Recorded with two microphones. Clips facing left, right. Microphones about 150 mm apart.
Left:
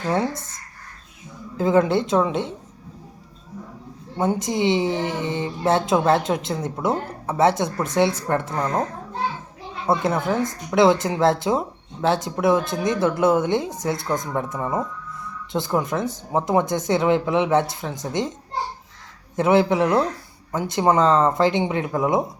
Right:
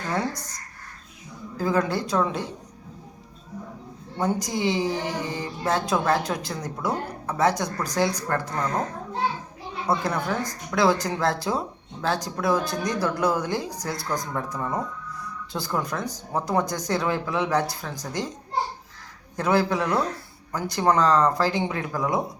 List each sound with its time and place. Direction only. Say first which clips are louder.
0.0 s a woman's voice: left 5 dB; 20° left (ahead or behind)
4.2 s a woman's voice: left 4 dB; 25° left (ahead or behind)
9.8 s a woman's voice: left 4 dB; 25° left (ahead or behind)
19.4 s a woman's voice: left 5 dB; 20° left (ahead or behind)